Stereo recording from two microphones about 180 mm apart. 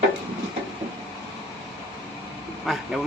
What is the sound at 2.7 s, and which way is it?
Speech, centre (ahead or behind).